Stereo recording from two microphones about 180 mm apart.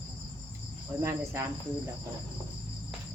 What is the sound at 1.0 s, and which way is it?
Speech, 15° right (ahead or behind).